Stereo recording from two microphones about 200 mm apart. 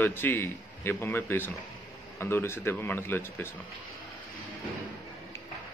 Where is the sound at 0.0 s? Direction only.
10° left (ahead or behind).